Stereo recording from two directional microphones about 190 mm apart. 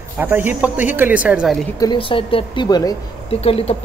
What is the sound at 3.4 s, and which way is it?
Speech, 30° left (ahead or behind).